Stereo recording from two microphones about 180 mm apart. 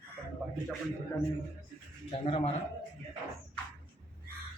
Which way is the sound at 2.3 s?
30° left (ahead or behind).